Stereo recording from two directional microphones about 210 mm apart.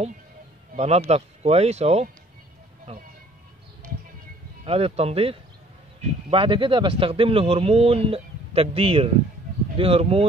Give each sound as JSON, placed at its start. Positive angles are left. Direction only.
{"t": 0.7, "sound": "speech", "side_deg": -30}
{"t": 4.6, "sound": "speech", "side_deg": -30}